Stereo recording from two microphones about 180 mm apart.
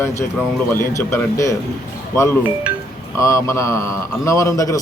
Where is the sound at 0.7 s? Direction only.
15° left (ahead or behind).